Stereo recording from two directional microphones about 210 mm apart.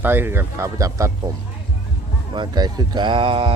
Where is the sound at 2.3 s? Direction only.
20° right (ahead or behind).